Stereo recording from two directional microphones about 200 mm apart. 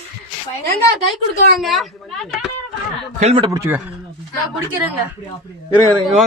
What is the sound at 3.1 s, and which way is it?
Speech, 30° right (ahead or behind).